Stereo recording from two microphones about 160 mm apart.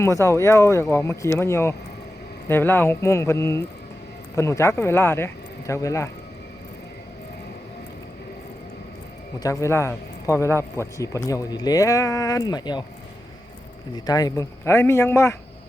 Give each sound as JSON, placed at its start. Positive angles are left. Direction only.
{"t": 0.0, "sound": "speech", "side_deg": 20}
{"t": 9.4, "sound": "speech", "side_deg": 20}
{"t": 13.9, "sound": "speech", "side_deg": 25}